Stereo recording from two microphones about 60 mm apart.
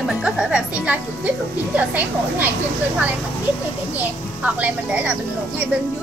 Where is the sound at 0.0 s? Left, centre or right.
Centre.